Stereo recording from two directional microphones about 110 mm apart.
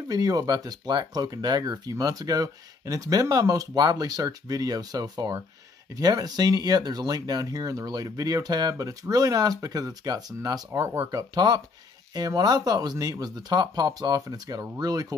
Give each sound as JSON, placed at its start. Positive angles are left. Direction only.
{"t": 0.1, "sound": "speech", "side_deg": -35}